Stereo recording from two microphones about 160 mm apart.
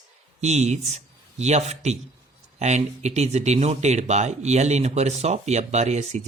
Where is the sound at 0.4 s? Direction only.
45° right (ahead or behind).